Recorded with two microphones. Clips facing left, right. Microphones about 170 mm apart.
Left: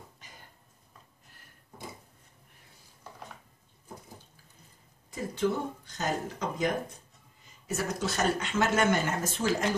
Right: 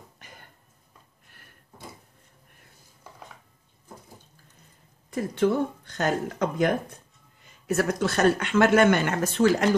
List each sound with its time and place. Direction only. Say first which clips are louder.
5.1 s speech: right 6 dB; 60° right (ahead or behind)